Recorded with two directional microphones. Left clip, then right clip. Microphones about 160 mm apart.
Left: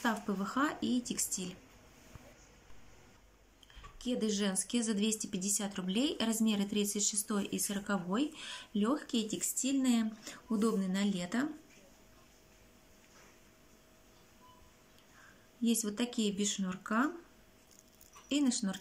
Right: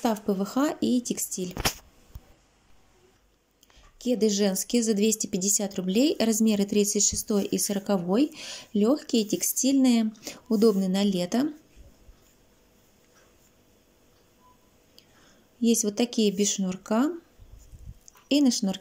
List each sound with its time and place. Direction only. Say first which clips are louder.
0.0 s a woman's voice: right 8 dB; 25° right (ahead or behind)
4.0 s a woman's voice: right 11 dB; 30° right (ahead or behind)
15.6 s a woman's voice: right 10 dB; 30° right (ahead or behind)
18.3 s speech: right 10 dB; 30° right (ahead or behind)